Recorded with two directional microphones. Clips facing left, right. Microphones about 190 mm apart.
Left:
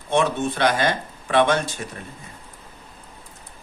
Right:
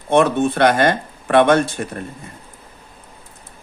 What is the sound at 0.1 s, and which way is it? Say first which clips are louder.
Speech: right 6 dB; 55° right (ahead or behind).